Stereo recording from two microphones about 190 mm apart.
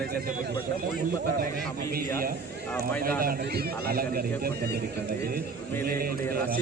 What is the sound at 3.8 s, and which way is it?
Speech, 55° right (ahead or behind).